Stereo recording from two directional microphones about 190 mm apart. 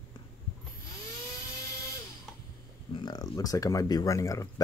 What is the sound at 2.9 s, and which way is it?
Speech, 25° left (ahead or behind).